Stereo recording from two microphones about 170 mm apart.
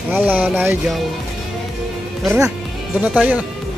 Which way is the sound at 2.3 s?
20° right (ahead or behind).